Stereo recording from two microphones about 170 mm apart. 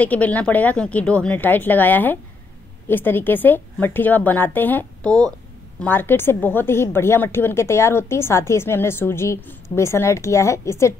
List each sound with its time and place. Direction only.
0.0 s a woman's voice: 10° left (ahead or behind)